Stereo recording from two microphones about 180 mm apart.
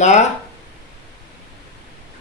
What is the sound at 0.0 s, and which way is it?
Speech, 40° left (ahead or behind).